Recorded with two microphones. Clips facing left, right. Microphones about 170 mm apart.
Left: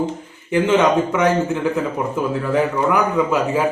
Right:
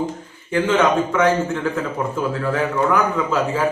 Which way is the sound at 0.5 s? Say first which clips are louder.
Left 2 dB; 15° left (ahead or behind).